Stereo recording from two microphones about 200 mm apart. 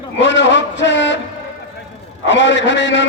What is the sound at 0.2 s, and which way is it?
Speech, 60° left (ahead or behind).